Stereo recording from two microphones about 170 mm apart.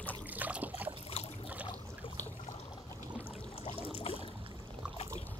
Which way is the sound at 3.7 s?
35° left (ahead or behind).